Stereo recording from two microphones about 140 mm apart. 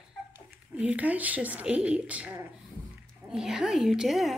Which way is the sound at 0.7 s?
10° right (ahead or behind).